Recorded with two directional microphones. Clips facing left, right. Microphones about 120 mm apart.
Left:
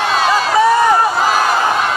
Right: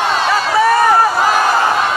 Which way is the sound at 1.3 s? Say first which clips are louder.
Right 1 dB; 40° right (ahead or behind).